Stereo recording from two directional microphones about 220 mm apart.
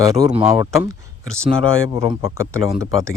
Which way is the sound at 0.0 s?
15° right (ahead or behind).